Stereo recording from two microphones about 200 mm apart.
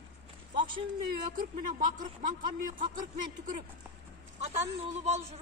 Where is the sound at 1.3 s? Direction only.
40° right (ahead or behind).